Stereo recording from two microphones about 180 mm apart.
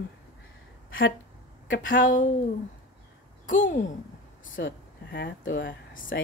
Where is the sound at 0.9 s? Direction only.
90° left.